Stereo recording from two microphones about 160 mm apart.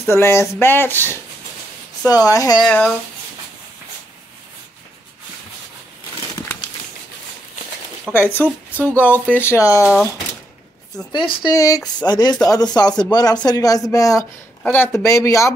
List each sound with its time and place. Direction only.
0.1 s speech: 15° left (ahead or behind)
2.6 s speech: 5° left (ahead or behind)
8.1 s speech: 10° left (ahead or behind)
11.1 s speech: 30° left (ahead or behind)